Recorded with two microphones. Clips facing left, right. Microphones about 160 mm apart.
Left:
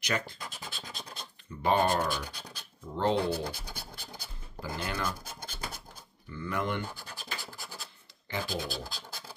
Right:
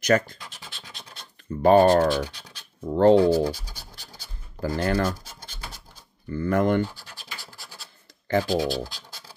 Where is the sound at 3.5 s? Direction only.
55° left (ahead or behind).